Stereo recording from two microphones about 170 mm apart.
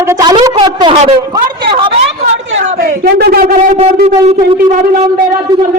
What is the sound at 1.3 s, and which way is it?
Speech, 30° right (ahead or behind).